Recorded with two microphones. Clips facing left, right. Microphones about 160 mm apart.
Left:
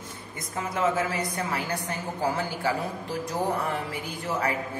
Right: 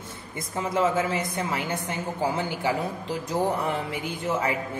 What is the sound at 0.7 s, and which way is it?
A woman's voice, 25° right (ahead or behind).